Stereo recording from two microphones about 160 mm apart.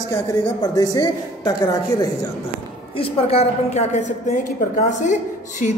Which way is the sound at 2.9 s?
40° left (ahead or behind).